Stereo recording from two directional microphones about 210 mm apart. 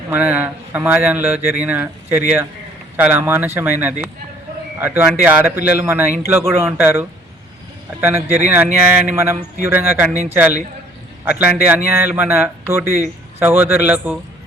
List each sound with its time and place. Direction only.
0.1 s speech: 5° right (ahead or behind)